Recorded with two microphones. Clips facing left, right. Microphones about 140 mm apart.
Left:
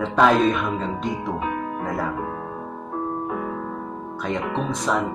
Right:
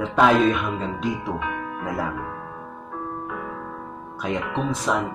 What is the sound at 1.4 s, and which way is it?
Music, 40° left (ahead or behind).